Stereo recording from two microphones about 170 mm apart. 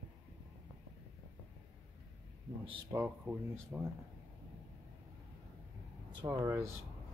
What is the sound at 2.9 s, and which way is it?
Speech, 15° right (ahead or behind).